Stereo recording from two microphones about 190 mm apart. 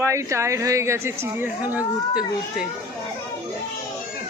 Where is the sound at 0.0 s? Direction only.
15° right (ahead or behind).